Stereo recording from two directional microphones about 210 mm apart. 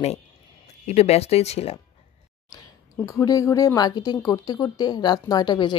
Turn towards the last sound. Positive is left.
turn(degrees=20)  # may be behind; listen again after turning